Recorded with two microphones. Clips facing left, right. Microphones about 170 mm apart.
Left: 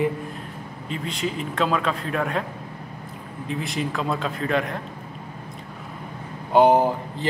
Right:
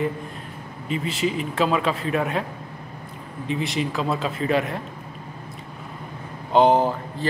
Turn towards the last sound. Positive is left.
turn(degrees=15)  # may be behind; listen again after turning